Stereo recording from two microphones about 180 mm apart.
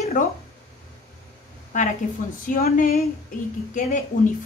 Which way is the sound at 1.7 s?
45° left (ahead or behind).